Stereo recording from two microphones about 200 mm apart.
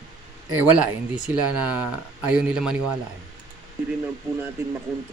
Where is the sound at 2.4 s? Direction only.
5° right (ahead or behind).